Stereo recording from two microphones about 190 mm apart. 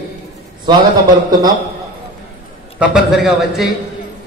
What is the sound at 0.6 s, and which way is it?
Speech, 20° right (ahead or behind).